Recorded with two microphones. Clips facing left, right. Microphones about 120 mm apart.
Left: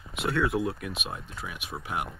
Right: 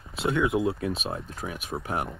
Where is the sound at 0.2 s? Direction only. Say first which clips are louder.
Right 3 dB; 20° right (ahead or behind).